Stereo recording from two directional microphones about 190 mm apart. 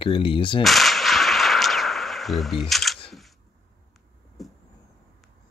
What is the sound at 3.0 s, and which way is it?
Single-lens reflex camera, centre (ahead or behind).